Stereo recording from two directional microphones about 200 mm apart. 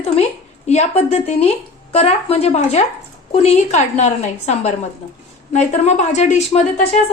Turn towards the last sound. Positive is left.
turn(degrees=35)  # may be behind; listen again after turning